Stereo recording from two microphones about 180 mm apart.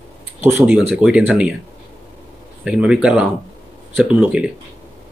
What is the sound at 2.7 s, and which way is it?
Speech, 5° right (ahead or behind).